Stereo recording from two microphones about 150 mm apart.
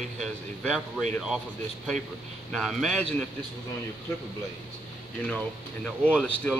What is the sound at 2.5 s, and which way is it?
Speech, centre (ahead or behind).